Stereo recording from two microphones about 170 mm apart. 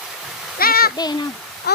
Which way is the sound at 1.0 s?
25° left (ahead or behind).